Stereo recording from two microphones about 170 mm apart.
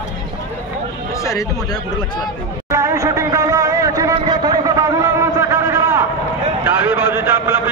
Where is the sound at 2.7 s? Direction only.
15° right (ahead or behind).